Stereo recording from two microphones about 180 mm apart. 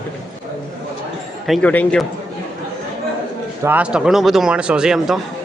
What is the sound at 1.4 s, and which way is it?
Speech, 5° left (ahead or behind).